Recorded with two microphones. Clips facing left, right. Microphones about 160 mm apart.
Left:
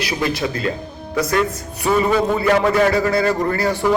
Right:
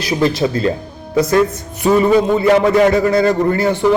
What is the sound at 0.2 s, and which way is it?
Speech, 25° right (ahead or behind).